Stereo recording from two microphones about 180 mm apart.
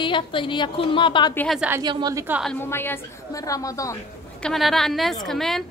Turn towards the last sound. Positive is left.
turn(degrees=0)  # may be behind; listen again after turning